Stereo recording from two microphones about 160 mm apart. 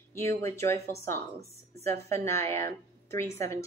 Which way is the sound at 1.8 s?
15° left (ahead or behind).